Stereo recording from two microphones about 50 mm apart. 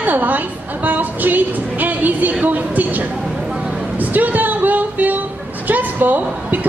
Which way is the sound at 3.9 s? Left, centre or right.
Right.